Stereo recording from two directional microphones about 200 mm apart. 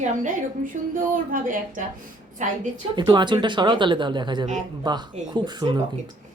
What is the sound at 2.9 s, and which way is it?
Speech, 25° right (ahead or behind).